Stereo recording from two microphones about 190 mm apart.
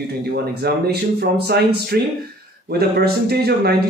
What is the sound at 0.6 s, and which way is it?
Speech, 60° right (ahead or behind).